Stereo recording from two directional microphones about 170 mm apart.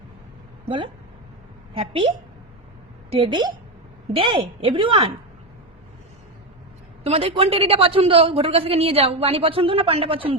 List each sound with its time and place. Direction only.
1.7 s a man's voice: 35° right (ahead or behind)
3.1 s a woman's voice: 30° right (ahead or behind)
7.0 s a man's voice: 35° right (ahead or behind)